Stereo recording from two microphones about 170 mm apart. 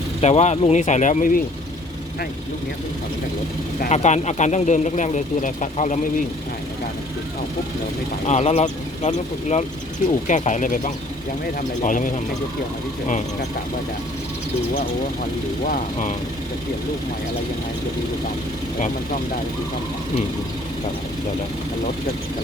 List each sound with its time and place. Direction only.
0.2 s speech: 40° left (ahead or behind)
3.8 s speech: 45° left (ahead or behind)
8.3 s speech: 40° left (ahead or behind)
15.6 s speech: 50° left (ahead or behind)